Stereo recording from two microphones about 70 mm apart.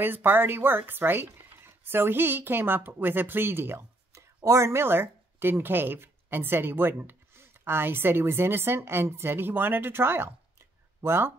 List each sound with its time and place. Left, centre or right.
0.0 s speech: right
4.5 s speech: right